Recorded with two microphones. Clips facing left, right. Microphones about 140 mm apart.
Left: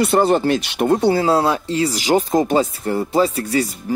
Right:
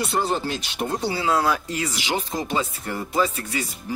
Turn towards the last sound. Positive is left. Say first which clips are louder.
# left 7 dB
turn(degrees=35)  # may be behind; listen again after turning